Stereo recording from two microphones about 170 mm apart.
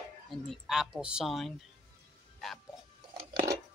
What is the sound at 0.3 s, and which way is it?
Speech, centre (ahead or behind).